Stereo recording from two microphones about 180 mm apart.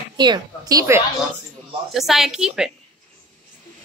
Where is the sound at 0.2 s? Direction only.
20° right (ahead or behind).